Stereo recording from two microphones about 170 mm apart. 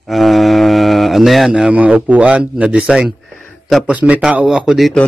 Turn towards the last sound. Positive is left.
turn(degrees=0)  # may be behind; listen again after turning